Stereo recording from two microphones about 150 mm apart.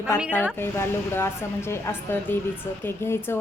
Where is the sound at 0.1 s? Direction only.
20° left (ahead or behind).